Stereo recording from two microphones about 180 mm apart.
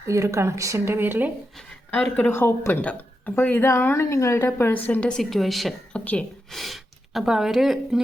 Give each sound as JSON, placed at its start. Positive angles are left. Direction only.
{"t": 0.1, "sound": "a woman's voice", "side_deg": -15}
{"t": 2.1, "sound": "speech", "side_deg": 10}